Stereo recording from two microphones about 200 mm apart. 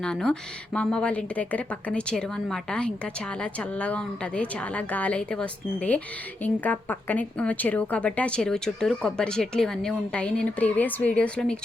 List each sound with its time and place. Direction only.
0.0 s a woman's voice: 5° left (ahead or behind)